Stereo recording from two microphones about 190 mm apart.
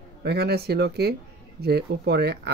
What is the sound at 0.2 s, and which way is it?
Speech, 60° right (ahead or behind).